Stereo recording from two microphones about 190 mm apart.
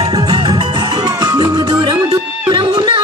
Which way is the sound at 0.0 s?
20° right (ahead or behind).